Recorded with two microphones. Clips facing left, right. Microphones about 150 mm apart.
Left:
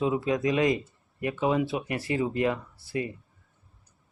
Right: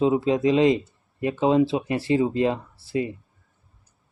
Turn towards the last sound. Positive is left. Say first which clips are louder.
# right 5 dB
turn(degrees=-25)  # may be behind; listen again after turning